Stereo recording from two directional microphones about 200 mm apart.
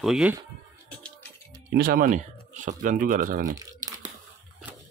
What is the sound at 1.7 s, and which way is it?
Speech, 45° right (ahead or behind).